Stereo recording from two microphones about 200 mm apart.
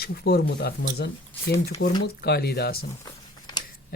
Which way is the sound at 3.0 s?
20° left (ahead or behind).